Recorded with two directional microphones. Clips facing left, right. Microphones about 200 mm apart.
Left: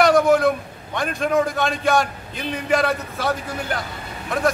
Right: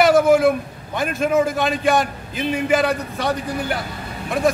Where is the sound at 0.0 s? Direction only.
5° right (ahead or behind).